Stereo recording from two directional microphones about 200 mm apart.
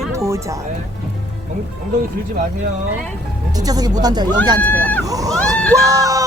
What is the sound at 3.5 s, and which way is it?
Speech, 20° right (ahead or behind).